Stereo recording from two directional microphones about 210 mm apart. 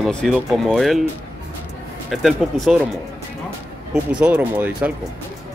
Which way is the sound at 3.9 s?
5° right (ahead or behind).